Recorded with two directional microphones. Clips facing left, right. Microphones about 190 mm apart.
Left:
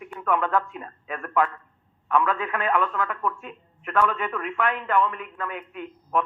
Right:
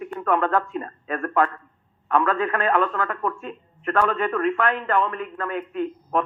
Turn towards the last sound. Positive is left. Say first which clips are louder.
# right 3 dB
turn(degrees=-40)  # may be behind; listen again after turning